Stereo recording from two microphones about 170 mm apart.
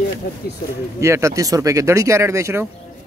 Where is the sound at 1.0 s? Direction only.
15° right (ahead or behind).